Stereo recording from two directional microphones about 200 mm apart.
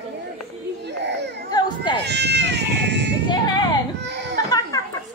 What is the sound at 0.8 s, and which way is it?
Baby cry, 60° right (ahead or behind).